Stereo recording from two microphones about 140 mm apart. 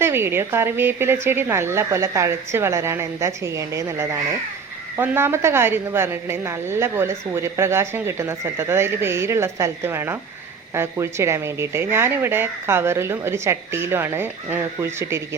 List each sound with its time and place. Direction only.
0.0 s a woman's voice: 15° right (ahead or behind)